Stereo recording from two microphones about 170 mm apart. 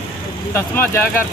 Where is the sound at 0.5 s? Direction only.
15° left (ahead or behind).